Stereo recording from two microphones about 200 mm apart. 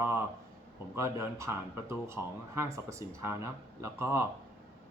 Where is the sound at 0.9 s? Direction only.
15° right (ahead or behind).